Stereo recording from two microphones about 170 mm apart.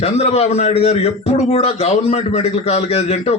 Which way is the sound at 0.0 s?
40° left (ahead or behind).